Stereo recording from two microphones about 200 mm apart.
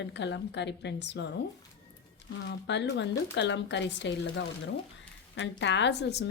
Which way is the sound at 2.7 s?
60° left (ahead or behind).